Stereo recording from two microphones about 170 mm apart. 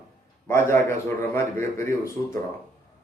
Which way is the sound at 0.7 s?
15° left (ahead or behind).